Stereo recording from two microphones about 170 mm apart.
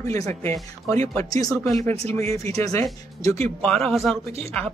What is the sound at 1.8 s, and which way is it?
Speech, 35° right (ahead or behind).